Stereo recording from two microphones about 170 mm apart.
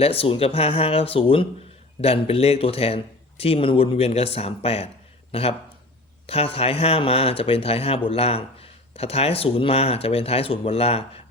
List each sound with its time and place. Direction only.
0.0 s speech: 35° left (ahead or behind)